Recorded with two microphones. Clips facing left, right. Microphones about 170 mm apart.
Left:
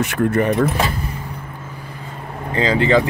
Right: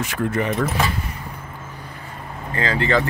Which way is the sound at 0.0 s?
65° left (ahead or behind).